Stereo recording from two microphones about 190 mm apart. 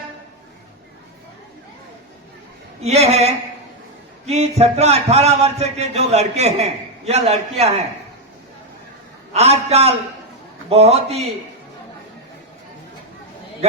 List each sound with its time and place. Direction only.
2.8 s a man's voice: 35° right (ahead or behind)
9.3 s a man's voice: 35° right (ahead or behind)